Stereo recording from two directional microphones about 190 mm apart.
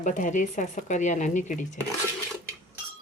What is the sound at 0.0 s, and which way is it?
Speech, 40° left (ahead or behind).